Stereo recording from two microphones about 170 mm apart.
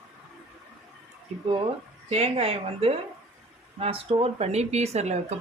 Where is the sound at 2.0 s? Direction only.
35° right (ahead or behind).